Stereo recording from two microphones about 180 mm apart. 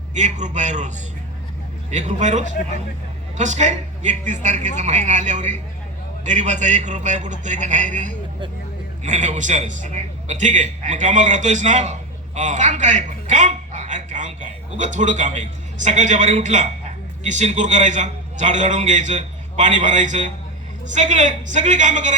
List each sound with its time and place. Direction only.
0.1 s a man's voice: 40° right (ahead or behind)